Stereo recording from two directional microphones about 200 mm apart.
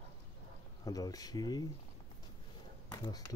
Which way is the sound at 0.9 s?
20° left (ahead or behind).